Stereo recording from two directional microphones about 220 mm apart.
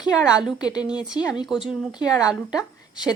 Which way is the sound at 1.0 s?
5° right (ahead or behind).